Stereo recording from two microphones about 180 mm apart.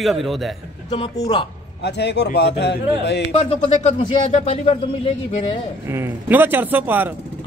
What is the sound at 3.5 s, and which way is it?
Speech, 30° left (ahead or behind).